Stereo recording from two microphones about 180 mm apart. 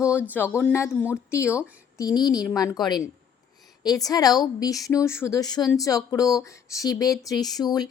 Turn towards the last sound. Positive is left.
turn(degrees=20)  # may be behind; listen again after turning